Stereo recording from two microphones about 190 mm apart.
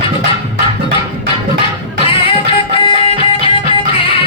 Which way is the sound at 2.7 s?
25° left (ahead or behind).